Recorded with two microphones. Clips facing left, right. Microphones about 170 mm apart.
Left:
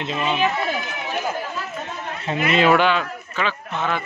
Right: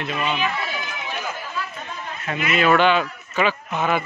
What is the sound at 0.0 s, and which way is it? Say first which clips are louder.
Speech: left 2 dB; 25° left (ahead or behind).